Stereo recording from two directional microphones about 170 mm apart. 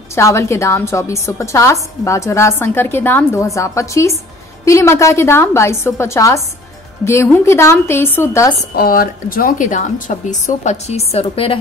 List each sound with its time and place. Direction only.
0.1 s a woman's voice: 15° left (ahead or behind)
8.7 s a woman's voice: 60° left (ahead or behind); by 11.5 s 35° left (ahead or behind)